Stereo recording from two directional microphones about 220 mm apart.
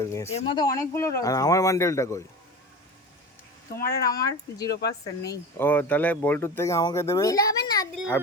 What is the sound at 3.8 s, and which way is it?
Speech, 40° left (ahead or behind).